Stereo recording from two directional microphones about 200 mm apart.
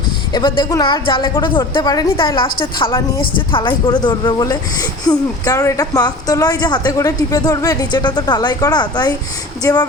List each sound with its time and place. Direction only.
0.3 s a woman's voice: 20° left (ahead or behind)